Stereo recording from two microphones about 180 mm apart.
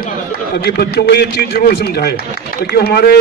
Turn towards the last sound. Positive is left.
turn(degrees=60)  # may be behind; listen again after turning